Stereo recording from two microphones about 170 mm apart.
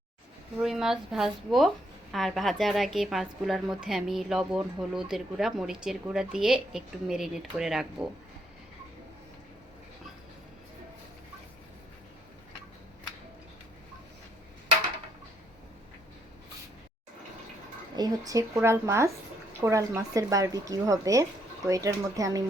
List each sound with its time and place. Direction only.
0.6 s a woman's voice: centre (ahead or behind)
17.9 s speech: 20° right (ahead or behind)